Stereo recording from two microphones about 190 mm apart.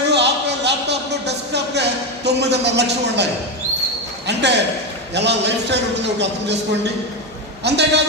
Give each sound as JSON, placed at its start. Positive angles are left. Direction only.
{"t": 0.1, "sound": "a sound", "side_deg": -65}
{"t": 4.3, "sound": "a man's voice", "side_deg": -65}
{"t": 7.6, "sound": "a man's voice", "side_deg": -65}